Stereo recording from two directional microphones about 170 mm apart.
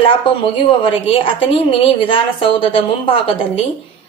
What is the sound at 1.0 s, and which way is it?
A woman's voice, 30° left (ahead or behind).